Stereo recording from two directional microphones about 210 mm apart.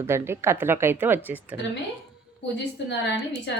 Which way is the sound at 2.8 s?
55° left (ahead or behind).